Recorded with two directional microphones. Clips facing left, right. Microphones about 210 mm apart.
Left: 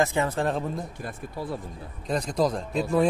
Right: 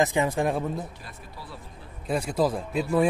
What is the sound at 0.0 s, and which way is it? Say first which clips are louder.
Speech: right 1 dB; 15° right (ahead or behind).